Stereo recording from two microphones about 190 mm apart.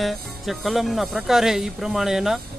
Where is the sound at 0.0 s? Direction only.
Centre (ahead or behind).